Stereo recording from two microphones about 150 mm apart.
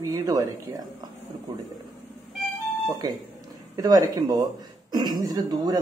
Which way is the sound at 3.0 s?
25° right (ahead or behind).